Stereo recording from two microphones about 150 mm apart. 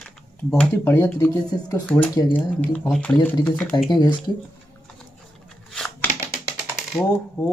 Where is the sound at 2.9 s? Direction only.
5° left (ahead or behind).